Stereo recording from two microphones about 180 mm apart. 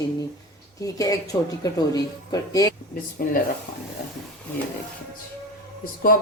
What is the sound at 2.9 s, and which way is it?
Speech, 55° left (ahead or behind).